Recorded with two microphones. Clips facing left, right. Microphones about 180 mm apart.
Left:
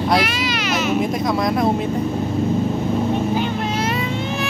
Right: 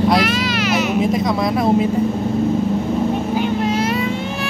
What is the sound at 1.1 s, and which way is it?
Speech, centre (ahead or behind).